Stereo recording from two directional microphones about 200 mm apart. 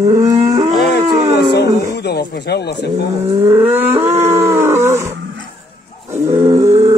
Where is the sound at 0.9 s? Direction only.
55° left (ahead or behind).